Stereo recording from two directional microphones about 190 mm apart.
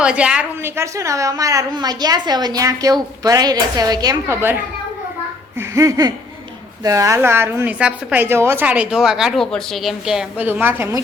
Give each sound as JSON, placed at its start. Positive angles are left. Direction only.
{"t": 0.0, "sound": "a woman's voice", "side_deg": -5}
{"t": 5.5, "sound": "laughter", "side_deg": -15}
{"t": 6.8, "sound": "a woman's voice", "side_deg": -15}